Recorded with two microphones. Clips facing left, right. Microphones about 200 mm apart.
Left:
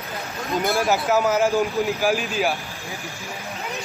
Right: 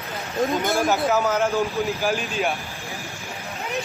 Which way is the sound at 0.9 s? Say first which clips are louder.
Left 2 dB; 5° left (ahead or behind).